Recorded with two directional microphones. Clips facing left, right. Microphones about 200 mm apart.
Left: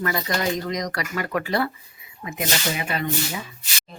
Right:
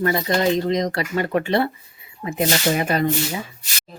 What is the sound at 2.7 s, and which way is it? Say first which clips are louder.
Speech: right 7 dB; 40° right (ahead or behind).